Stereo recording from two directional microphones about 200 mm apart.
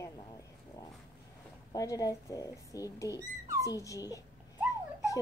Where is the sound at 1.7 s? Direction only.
20° left (ahead or behind).